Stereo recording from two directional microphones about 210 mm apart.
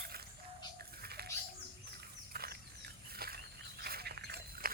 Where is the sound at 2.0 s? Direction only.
45° right (ahead or behind).